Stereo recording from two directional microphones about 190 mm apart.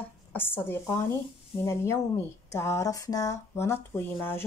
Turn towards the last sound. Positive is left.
turn(degrees=10)  # may be behind; listen again after turning